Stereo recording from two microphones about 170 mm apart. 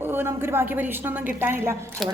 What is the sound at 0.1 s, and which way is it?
A woman's voice, 15° right (ahead or behind).